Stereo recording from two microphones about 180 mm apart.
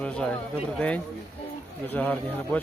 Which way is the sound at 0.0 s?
5° left (ahead or behind).